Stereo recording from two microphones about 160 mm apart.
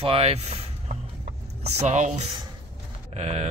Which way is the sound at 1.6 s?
45° right (ahead or behind).